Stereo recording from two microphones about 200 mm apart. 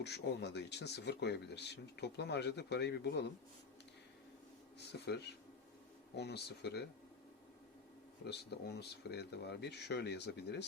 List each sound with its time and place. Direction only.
0.0 s speech: 55° left (ahead or behind)
4.9 s speech: 55° left (ahead or behind)
8.3 s speech: 55° left (ahead or behind)